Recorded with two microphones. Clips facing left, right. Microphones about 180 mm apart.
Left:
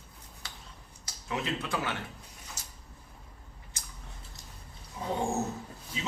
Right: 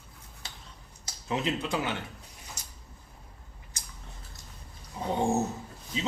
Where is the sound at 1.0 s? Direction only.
20° right (ahead or behind).